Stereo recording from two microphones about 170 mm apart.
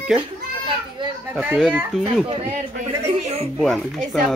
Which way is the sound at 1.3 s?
10° right (ahead or behind).